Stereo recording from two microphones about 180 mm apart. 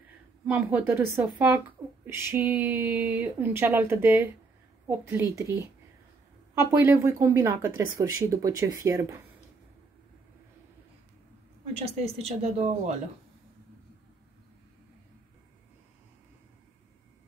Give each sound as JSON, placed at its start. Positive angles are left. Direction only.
{"t": 0.5, "sound": "speech", "side_deg": -10}
{"t": 11.7, "sound": "speech", "side_deg": -35}